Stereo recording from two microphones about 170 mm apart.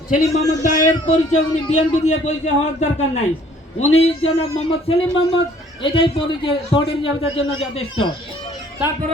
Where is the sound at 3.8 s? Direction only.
40° left (ahead or behind).